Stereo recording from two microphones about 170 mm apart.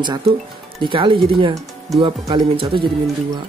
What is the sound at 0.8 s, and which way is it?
Speech, 30° right (ahead or behind).